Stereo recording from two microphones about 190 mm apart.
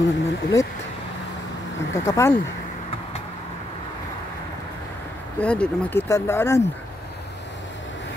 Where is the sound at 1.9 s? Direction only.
15° left (ahead or behind).